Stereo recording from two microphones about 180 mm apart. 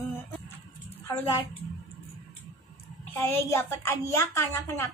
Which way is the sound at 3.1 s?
15° left (ahead or behind).